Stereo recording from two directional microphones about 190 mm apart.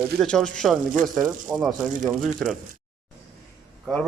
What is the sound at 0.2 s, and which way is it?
Speech, 5° left (ahead or behind).